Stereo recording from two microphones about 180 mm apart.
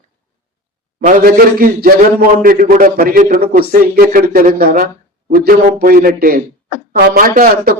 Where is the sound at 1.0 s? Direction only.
55° right (ahead or behind).